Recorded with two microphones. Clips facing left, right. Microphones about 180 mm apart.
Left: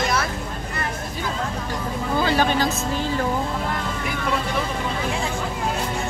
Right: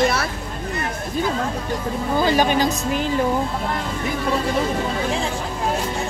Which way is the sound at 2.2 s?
15° right (ahead or behind).